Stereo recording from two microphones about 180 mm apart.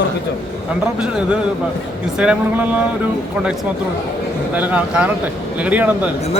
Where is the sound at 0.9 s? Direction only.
5° right (ahead or behind).